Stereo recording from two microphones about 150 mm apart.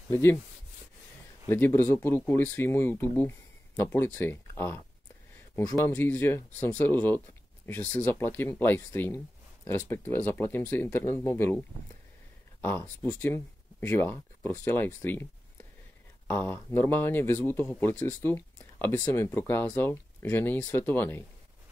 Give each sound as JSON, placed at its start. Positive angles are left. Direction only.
{"t": 0.1, "sound": "speech", "side_deg": 15}
{"t": 1.5, "sound": "speech", "side_deg": 15}
{"t": 5.9, "sound": "speech", "side_deg": 15}
{"t": 13.0, "sound": "speech", "side_deg": 15}
{"t": 16.3, "sound": "speech", "side_deg": 15}